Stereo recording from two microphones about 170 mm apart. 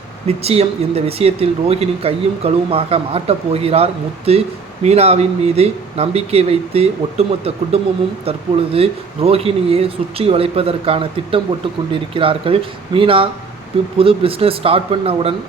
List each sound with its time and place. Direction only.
0.3 s speech: 35° right (ahead or behind)